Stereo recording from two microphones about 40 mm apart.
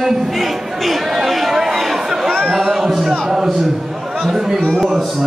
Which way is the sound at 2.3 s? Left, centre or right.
Centre.